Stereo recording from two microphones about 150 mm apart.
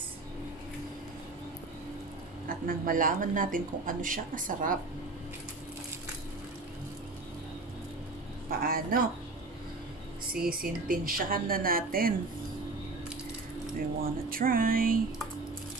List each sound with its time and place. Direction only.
2.4 s speech: 70° right (ahead or behind)
8.5 s a woman's voice: 75° right (ahead or behind)
10.2 s a woman's voice: 75° right (ahead or behind)
14.3 s a woman's voice: 70° right (ahead or behind)